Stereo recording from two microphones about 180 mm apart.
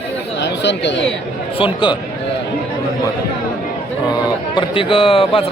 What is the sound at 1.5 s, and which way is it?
Speech, 25° left (ahead or behind).